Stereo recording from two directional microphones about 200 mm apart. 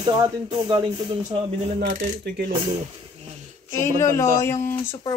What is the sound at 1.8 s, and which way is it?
Speech, 45° right (ahead or behind).